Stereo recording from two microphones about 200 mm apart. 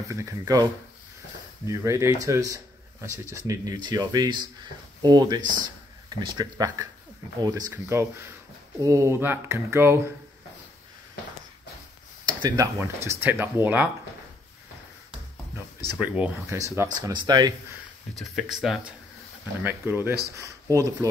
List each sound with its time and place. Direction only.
0.1 s speech: 15° right (ahead or behind)
1.7 s speech: 15° right (ahead or behind)
12.4 s speech: 20° right (ahead or behind)
16.0 s speech: 5° right (ahead or behind)
18.1 s speech: centre (ahead or behind); by 21.1 s 15° right (ahead or behind)